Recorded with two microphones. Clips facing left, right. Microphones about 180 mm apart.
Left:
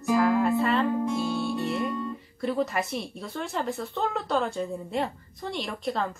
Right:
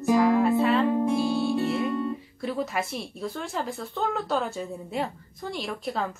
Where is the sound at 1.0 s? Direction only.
30° right (ahead or behind).